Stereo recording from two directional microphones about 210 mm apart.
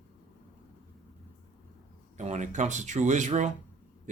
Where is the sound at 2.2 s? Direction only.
35° right (ahead or behind).